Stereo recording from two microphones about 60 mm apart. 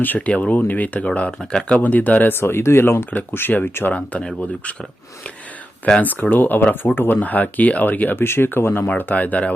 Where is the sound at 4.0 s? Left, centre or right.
Left.